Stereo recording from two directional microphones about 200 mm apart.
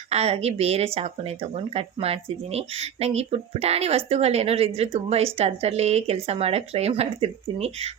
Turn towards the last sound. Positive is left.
turn(degrees=-30)  # may be behind; listen again after turning